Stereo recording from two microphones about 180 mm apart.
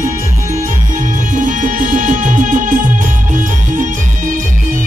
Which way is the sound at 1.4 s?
45° right (ahead or behind).